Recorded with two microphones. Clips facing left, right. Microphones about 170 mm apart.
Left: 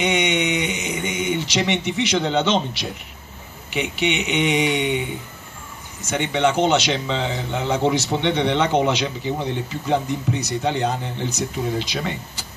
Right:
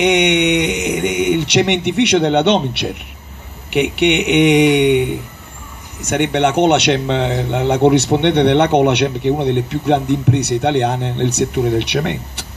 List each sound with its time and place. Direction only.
0.0 s speech: 70° right (ahead or behind)